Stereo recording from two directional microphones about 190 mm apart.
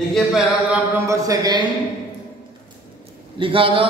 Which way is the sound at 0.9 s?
15° right (ahead or behind).